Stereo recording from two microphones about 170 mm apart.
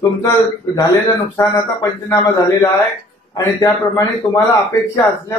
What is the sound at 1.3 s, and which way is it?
A man's voice, 25° left (ahead or behind).